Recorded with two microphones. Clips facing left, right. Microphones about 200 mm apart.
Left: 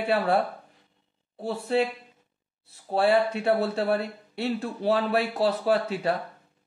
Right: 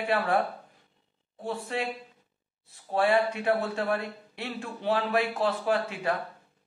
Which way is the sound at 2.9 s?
35° left (ahead or behind).